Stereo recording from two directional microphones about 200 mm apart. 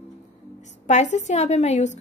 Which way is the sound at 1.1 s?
35° left (ahead or behind).